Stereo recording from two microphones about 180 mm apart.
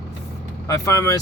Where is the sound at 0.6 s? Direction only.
20° left (ahead or behind).